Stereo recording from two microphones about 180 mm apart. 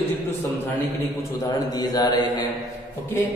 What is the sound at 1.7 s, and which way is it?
Speech, 20° left (ahead or behind).